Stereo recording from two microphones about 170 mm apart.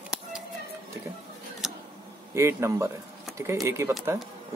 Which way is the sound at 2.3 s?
15° right (ahead or behind).